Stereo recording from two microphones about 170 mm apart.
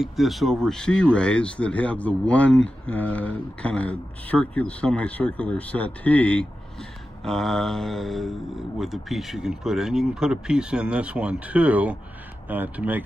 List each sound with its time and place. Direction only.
0.0 s speech: centre (ahead or behind)